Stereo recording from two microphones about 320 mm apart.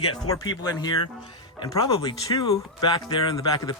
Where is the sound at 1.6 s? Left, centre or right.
Centre.